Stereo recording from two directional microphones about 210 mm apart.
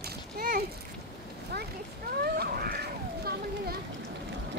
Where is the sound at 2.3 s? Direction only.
50° right (ahead or behind).